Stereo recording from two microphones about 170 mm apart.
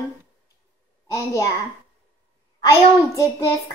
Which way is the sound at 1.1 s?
20° left (ahead or behind).